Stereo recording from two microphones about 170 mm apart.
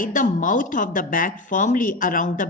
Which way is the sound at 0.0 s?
50° left (ahead or behind).